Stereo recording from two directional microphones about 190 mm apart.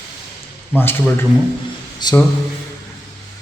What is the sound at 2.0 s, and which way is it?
Speech, 20° left (ahead or behind).